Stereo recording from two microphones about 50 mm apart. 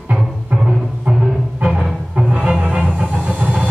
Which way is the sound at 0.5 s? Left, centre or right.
Right.